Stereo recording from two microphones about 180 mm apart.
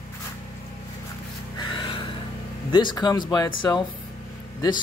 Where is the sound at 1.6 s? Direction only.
25° left (ahead or behind).